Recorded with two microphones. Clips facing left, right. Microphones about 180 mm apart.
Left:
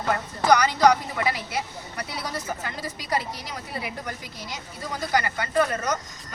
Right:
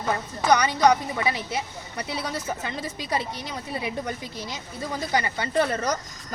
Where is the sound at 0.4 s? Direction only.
20° right (ahead or behind).